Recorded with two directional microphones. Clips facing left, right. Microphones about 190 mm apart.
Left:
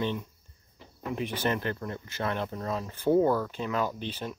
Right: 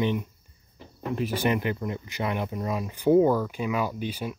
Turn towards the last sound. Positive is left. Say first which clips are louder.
# right 4 dB
turn(degrees=-10)  # may be behind; listen again after turning